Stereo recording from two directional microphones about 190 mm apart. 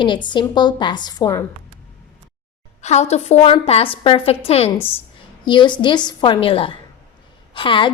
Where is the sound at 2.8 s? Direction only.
35° left (ahead or behind).